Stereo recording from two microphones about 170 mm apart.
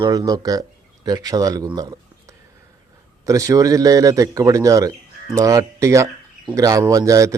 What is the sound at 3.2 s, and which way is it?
Speech, 20° right (ahead or behind).